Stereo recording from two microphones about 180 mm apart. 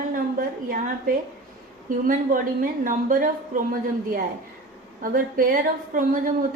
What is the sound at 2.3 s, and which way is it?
A woman's voice, 50° right (ahead or behind).